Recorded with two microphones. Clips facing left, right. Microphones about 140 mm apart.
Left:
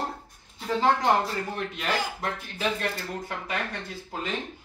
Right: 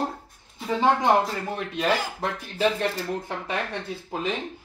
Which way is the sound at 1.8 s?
30° right (ahead or behind).